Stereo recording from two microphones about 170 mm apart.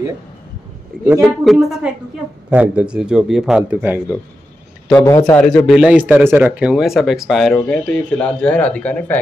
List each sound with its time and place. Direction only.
1.0 s speech: 10° right (ahead or behind)
1.4 s speech: centre (ahead or behind)
4.9 s a man's voice: 20° left (ahead or behind)
5.7 s speech: 5° right (ahead or behind)